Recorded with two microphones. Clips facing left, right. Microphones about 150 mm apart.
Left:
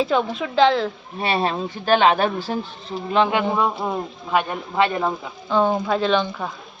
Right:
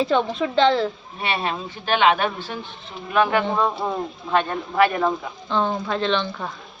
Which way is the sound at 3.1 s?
20° left (ahead or behind).